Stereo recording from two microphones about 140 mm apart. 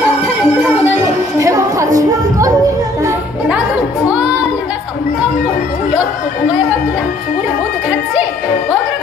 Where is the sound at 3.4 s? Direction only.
10° right (ahead or behind).